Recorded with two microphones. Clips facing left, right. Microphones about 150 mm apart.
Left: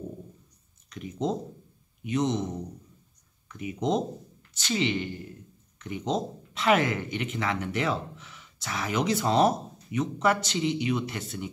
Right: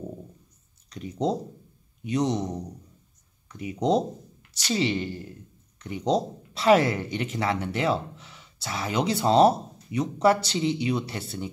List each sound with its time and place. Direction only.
0.8 s speech: 35° right (ahead or behind)